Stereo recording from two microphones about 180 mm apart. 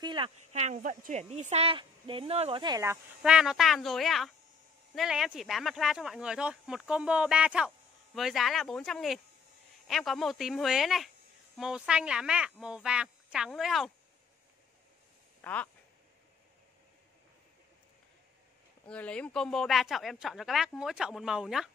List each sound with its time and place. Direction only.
0.0 s speech: 30° right (ahead or behind)
3.2 s speech: 5° right (ahead or behind)
15.4 s speech: 10° left (ahead or behind)
18.9 s speech: 5° left (ahead or behind)